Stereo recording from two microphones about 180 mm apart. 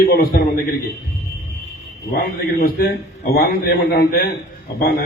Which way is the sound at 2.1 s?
55° left (ahead or behind).